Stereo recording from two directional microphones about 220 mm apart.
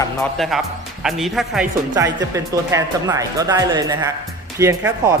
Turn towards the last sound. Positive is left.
turn(degrees=-15)  # may be behind; listen again after turning